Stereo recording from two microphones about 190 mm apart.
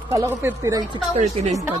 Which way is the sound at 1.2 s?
35° right (ahead or behind).